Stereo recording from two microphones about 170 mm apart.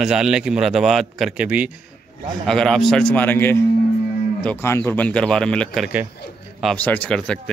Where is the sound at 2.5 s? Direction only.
5° left (ahead or behind).